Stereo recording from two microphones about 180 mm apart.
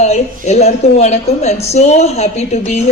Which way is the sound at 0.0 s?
40° left (ahead or behind).